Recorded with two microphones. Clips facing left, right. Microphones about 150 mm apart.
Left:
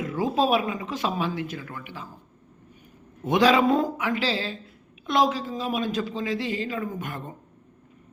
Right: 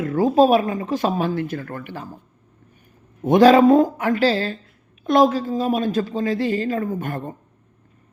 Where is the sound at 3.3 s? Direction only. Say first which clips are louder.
Right 8 dB; 45° right (ahead or behind).